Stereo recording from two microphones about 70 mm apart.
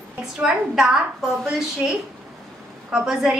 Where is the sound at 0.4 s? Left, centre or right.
Centre.